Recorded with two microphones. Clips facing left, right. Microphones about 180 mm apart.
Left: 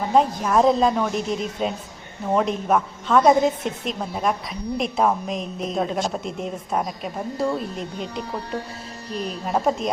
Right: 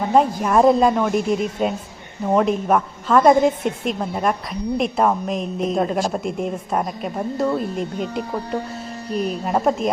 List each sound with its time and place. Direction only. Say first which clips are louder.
0.1 s a woman's voice: right 2 dB; 5° right (ahead or behind)
7.9 s speech: right 5 dB; 45° right (ahead or behind)
9.1 s a woman's voice: right 4 dB; 5° right (ahead or behind)